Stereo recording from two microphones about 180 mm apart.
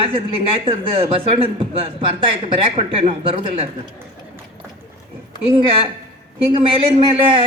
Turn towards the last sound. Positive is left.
turn(degrees=-30)  # may be behind; listen again after turning